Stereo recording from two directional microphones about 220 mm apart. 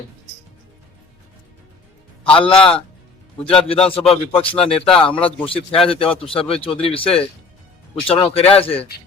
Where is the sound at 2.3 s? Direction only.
25° left (ahead or behind).